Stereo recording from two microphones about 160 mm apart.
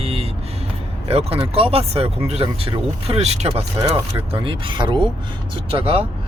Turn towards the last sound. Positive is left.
turn(degrees=-35)  # may be behind; listen again after turning